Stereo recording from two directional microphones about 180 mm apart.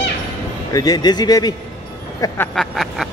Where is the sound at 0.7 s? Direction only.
20° left (ahead or behind).